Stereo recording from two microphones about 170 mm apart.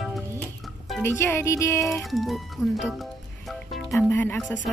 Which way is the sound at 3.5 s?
Centre (ahead or behind).